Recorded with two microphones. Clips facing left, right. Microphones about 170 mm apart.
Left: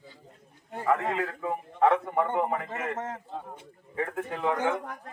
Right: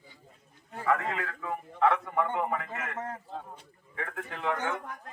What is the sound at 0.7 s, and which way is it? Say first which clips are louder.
A man's voice: left 2 dB; 25° left (ahead or behind).